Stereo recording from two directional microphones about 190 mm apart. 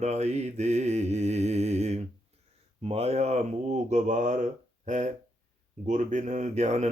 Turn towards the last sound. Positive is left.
turn(degrees=-35)  # may be behind; listen again after turning